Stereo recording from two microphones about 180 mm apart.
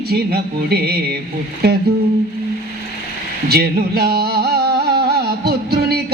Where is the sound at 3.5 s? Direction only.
60° right (ahead or behind).